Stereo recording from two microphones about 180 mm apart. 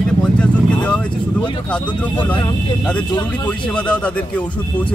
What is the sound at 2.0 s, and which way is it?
Speech, 10° left (ahead or behind).